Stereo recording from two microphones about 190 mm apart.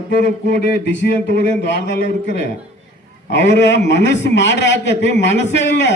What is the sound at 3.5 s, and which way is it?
A man's voice, 70° left (ahead or behind).